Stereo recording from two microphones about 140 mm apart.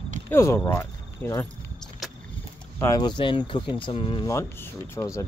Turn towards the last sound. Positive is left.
turn(degrees=20)  # may be behind; listen again after turning